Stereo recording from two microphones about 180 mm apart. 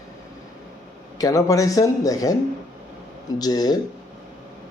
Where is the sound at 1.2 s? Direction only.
20° left (ahead or behind).